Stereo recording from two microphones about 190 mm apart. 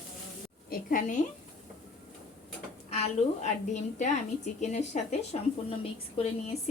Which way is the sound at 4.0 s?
40° left (ahead or behind).